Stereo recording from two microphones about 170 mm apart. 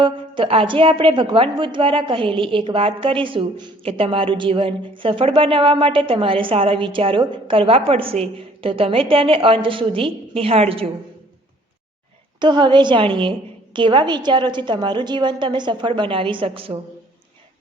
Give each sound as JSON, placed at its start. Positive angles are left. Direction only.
{"t": 0.0, "sound": "a woman's voice", "side_deg": -30}
{"t": 12.4, "sound": "a woman's voice", "side_deg": -25}